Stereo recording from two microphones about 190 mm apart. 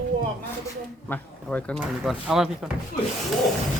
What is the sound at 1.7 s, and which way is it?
Speech, 5° right (ahead or behind).